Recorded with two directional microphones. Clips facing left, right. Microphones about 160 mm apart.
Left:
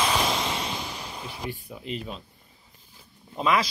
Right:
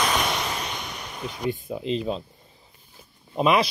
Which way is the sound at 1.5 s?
25° right (ahead or behind).